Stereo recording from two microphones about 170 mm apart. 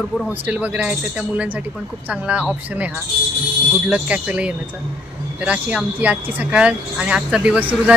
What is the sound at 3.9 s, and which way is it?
Speech, 10° right (ahead or behind).